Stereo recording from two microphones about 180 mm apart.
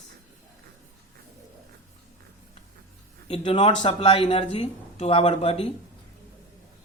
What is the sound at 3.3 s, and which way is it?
Speech, 35° left (ahead or behind).